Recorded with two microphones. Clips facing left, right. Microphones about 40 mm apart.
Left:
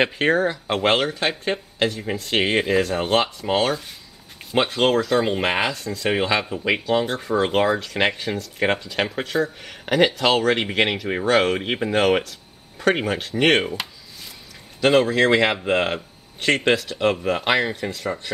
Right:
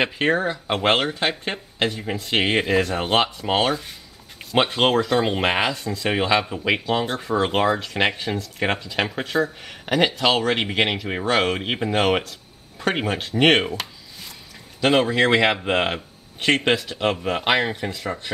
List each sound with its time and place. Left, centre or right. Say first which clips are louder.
0.0 s speech: left 2 dB; centre
4.6 s speech: even; centre
14.8 s speech: left 1 dB; centre